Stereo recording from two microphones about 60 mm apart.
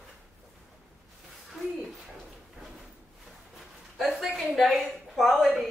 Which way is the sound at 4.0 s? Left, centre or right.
Centre.